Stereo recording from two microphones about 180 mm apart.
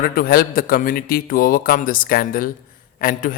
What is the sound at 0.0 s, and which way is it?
A man's voice, 55° left (ahead or behind).